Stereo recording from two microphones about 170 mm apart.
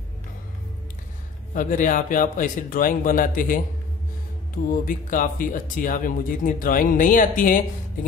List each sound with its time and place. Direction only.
1.5 s speech: 50° left (ahead or behind)
4.6 s speech: 55° left (ahead or behind)